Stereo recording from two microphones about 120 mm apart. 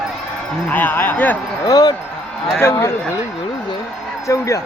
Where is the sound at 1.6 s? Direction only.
30° left (ahead or behind).